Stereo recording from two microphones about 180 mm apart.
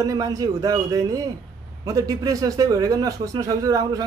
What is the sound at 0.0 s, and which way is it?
Speech, 20° right (ahead or behind).